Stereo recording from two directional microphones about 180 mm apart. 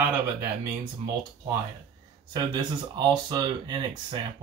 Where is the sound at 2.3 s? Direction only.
25° right (ahead or behind).